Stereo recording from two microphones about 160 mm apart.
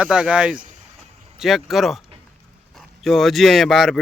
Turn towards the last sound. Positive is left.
turn(degrees=0)  # may be behind; listen again after turning